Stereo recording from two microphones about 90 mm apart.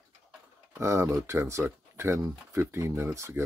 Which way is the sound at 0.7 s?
30° right (ahead or behind).